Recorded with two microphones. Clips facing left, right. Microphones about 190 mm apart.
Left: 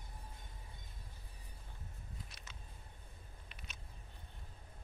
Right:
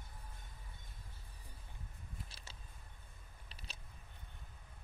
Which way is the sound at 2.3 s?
30° right (ahead or behind).